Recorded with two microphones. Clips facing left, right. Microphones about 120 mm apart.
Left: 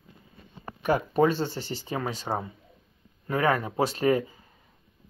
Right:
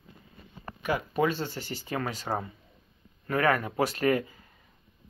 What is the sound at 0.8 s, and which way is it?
Speech, 35° left (ahead or behind).